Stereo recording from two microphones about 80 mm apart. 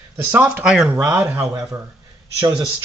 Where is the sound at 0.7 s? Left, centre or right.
Centre.